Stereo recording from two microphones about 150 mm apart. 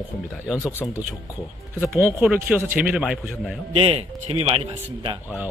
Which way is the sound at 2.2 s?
10° right (ahead or behind).